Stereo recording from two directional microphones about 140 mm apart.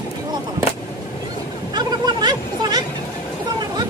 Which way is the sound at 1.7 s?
30° right (ahead or behind).